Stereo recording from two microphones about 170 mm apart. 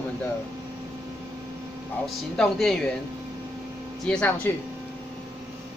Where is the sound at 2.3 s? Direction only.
5° left (ahead or behind).